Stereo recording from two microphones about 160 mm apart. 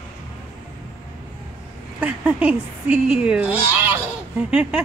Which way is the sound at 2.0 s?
10° right (ahead or behind).